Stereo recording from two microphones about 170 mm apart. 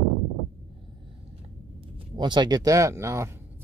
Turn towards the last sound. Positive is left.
turn(degrees=-15)  # may be behind; listen again after turning